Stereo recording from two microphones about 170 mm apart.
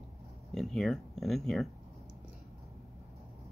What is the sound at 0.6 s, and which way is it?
Speech, centre (ahead or behind).